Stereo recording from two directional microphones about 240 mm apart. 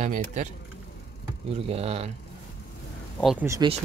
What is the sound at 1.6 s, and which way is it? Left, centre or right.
Speech, right.